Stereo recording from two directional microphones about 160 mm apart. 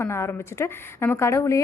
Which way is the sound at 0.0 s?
15° left (ahead or behind).